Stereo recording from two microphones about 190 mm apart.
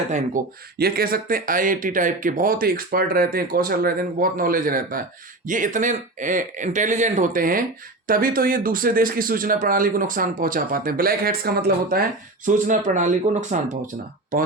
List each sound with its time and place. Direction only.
0.1 s a man's voice: 50° right (ahead or behind)
12.5 s a man's voice: 45° right (ahead or behind)